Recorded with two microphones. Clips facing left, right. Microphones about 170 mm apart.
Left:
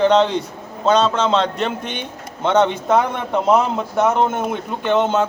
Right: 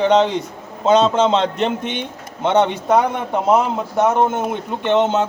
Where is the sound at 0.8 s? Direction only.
20° right (ahead or behind).